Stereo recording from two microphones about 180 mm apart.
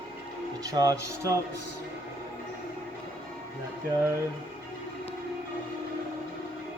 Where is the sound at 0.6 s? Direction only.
20° right (ahead or behind).